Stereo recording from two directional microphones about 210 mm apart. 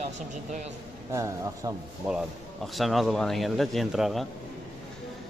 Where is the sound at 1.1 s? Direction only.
15° right (ahead or behind).